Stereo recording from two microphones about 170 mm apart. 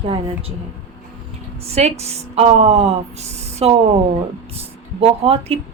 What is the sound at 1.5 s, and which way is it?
Speech, 35° right (ahead or behind).